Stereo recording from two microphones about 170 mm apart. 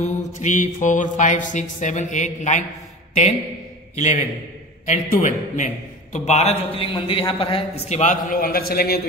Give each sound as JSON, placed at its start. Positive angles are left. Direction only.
{"t": 0.0, "sound": "mantra", "side_deg": 45}
{"t": 3.9, "sound": "a man's voice", "side_deg": 45}
{"t": 4.8, "sound": "mantra", "side_deg": 45}
{"t": 6.1, "sound": "a man's voice", "side_deg": 40}
{"t": 7.9, "sound": "a man's voice", "side_deg": 45}